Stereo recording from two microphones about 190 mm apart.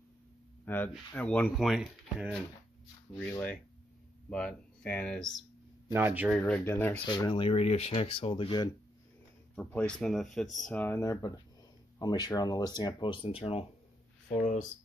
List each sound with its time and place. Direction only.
0.7 s speech: 10° left (ahead or behind)
5.9 s speech: 10° right (ahead or behind)
6.3 s speech: 5° left (ahead or behind)
7.1 s speech: 25° left (ahead or behind)
9.6 s speech: 5° left (ahead or behind); by 14.7 s 40° left (ahead or behind)